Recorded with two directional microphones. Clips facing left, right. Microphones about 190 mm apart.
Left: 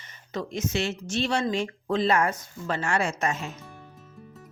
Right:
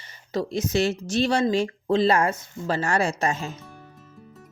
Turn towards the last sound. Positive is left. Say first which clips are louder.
# right 3 dB
turn(degrees=-30)  # may be behind; listen again after turning